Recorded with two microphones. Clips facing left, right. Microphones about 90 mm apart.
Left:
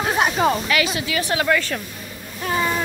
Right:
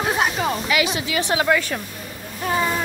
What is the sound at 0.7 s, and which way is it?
A woman's voice, 20° right (ahead or behind).